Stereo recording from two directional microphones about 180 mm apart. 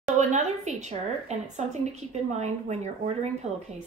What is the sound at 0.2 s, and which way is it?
A woman's voice, 40° right (ahead or behind).